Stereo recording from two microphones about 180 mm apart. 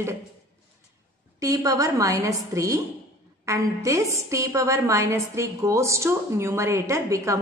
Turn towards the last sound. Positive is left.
turn(degrees=-15)  # may be behind; listen again after turning